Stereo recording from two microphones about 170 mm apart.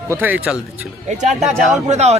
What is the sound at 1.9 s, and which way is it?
Speech, 40° right (ahead or behind).